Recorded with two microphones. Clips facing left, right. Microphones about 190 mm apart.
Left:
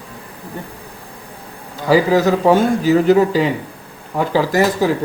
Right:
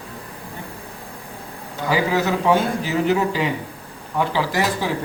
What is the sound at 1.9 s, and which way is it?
Speech, 35° left (ahead or behind).